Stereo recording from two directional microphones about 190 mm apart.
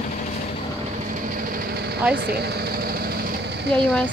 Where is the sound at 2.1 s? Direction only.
60° right (ahead or behind).